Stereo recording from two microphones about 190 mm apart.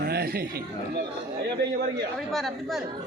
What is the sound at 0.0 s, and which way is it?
A man's voice, 55° right (ahead or behind).